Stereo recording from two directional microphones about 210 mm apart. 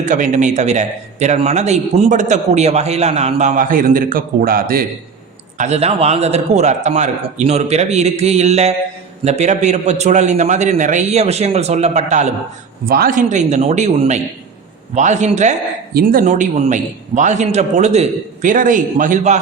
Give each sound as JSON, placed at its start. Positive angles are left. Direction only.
{"t": 0.0, "sound": "a man's voice", "side_deg": -35}
{"t": 5.5, "sound": "a man's voice", "side_deg": -30}